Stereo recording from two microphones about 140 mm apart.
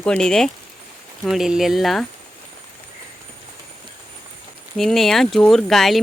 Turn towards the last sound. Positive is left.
turn(degrees=0)  # may be behind; listen again after turning